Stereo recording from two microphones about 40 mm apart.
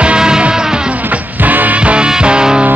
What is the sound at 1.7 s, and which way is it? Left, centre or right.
Music, right.